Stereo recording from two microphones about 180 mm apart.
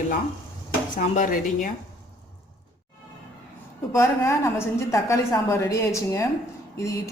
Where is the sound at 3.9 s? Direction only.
15° left (ahead or behind).